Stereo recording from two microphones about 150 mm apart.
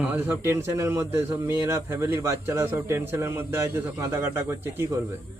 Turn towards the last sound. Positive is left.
turn(degrees=-15)  # may be behind; listen again after turning